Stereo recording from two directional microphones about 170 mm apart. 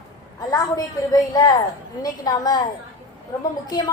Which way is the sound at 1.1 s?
25° left (ahead or behind).